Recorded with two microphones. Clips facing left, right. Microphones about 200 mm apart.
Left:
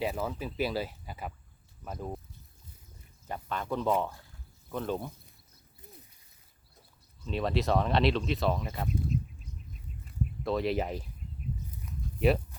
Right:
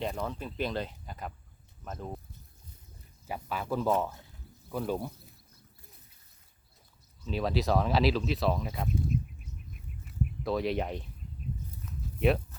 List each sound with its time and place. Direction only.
0.0 s speech: 5° left (ahead or behind)
3.2 s speech: 5° right (ahead or behind)
7.3 s speech: centre (ahead or behind)
8.9 s a sound: 55° right (ahead or behind)
10.4 s speech: centre (ahead or behind)